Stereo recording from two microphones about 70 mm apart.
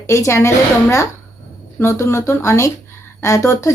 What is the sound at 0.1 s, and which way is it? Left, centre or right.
A woman's voice, left.